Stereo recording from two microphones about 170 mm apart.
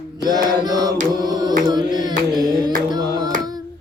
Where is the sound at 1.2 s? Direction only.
25° right (ahead or behind).